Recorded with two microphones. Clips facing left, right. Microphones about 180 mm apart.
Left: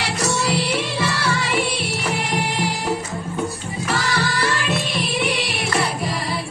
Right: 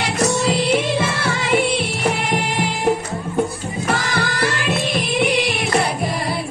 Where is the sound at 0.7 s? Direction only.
50° right (ahead or behind).